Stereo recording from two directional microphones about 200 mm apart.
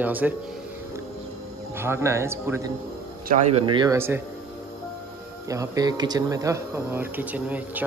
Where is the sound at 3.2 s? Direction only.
35° right (ahead or behind).